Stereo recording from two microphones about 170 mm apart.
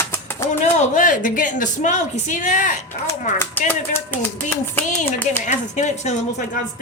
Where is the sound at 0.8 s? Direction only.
50° left (ahead or behind).